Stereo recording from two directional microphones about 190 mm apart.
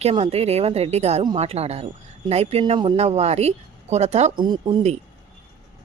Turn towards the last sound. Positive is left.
turn(degrees=-25)  # may be behind; listen again after turning